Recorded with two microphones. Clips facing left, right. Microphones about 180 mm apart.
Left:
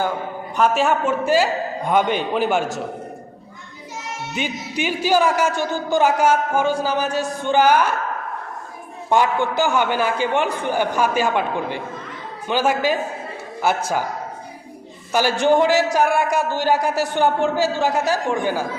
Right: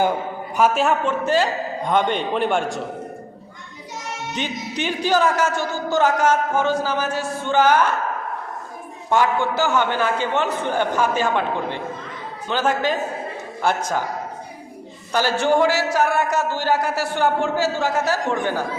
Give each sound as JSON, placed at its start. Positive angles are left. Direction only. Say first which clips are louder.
{"t": 0.5, "sound": "a man's voice", "louder": "even", "side_deg": -5}
{"t": 4.3, "sound": "a man's voice", "louder": "left 1 dB", "side_deg": 10}
{"t": 9.0, "sound": "a man's voice", "louder": "left 1 dB", "side_deg": 15}
{"t": 15.1, "sound": "a man's voice", "louder": "left 2 dB", "side_deg": 15}